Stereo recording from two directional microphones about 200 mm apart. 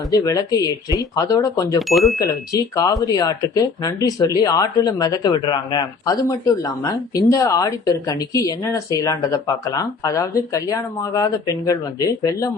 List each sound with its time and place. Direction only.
0.1 s speech: 15° left (ahead or behind)
1.9 s speech: centre (ahead or behind)
2.1 s speech: 15° left (ahead or behind)